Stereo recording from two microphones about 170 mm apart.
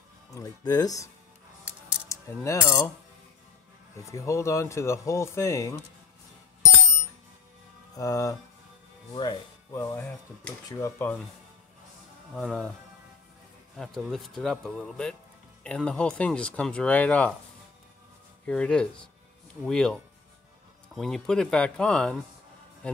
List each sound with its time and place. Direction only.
0.3 s speech: 20° left (ahead or behind)
1.6 s music: 5° right (ahead or behind)
2.0 s speech: 15° left (ahead or behind)
3.9 s speech: 15° left (ahead or behind)
7.9 s speech: 20° left (ahead or behind)
9.8 s speech: 10° left (ahead or behind)
12.4 s a man's voice: 5° left (ahead or behind)
13.7 s a man's voice: centre (ahead or behind)
18.4 s a man's voice: 5° left (ahead or behind)